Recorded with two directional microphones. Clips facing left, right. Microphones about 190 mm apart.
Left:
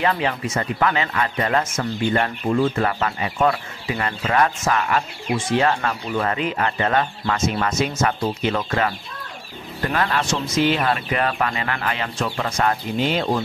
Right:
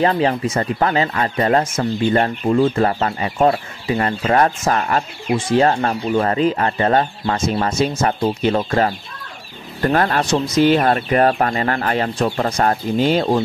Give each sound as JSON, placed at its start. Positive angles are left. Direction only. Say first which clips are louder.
{"t": 0.0, "sound": "speech", "louder": "right 5 dB", "side_deg": -35}